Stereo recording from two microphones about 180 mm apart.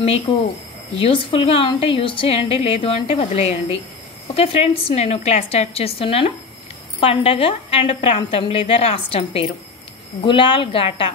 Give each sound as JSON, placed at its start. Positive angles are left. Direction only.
{"t": 0.9, "sound": "a woman's voice", "side_deg": 30}